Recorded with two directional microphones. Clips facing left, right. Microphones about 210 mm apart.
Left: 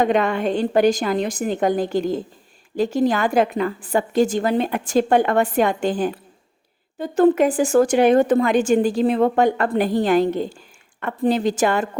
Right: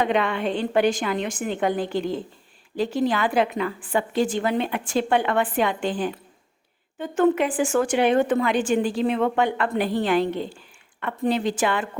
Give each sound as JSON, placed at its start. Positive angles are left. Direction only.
{"t": 0.0, "sound": "a woman's voice", "side_deg": 45}